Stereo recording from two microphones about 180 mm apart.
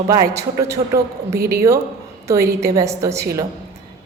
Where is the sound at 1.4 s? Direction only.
60° right (ahead or behind).